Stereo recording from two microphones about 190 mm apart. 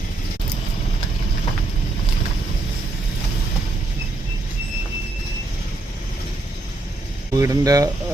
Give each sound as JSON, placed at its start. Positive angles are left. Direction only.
{"t": 7.3, "sound": "speech", "side_deg": -20}